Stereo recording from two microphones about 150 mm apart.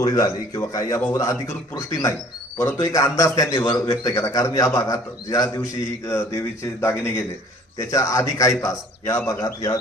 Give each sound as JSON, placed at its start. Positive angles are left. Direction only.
{"t": 0.0, "sound": "a man's voice", "side_deg": 25}